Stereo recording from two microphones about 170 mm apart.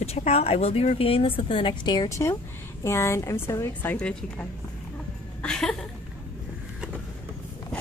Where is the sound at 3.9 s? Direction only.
5° left (ahead or behind).